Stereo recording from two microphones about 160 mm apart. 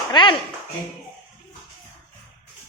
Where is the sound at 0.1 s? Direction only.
30° left (ahead or behind).